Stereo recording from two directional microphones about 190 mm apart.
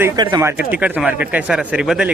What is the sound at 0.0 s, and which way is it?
Speech, 20° right (ahead or behind).